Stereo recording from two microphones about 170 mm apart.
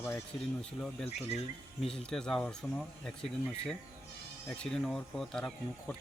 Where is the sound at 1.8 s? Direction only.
5° left (ahead or behind).